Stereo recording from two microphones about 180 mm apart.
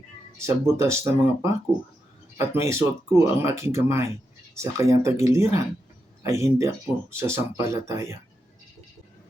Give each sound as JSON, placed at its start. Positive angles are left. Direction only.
{"t": 0.4, "sound": "speech", "side_deg": -15}